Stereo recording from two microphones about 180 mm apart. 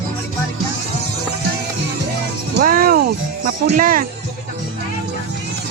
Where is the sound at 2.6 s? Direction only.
55° right (ahead or behind).